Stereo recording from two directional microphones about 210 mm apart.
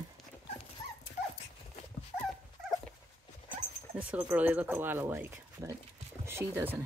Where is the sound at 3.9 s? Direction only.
10° right (ahead or behind).